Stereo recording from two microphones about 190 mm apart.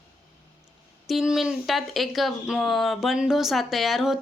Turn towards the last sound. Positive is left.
turn(degrees=0)  # may be behind; listen again after turning